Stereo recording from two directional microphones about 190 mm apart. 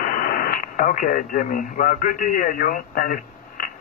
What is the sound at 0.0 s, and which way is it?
Speech, 45° left (ahead or behind).